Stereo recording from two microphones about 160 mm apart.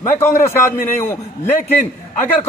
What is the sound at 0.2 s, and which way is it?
A man's voice, 15° left (ahead or behind).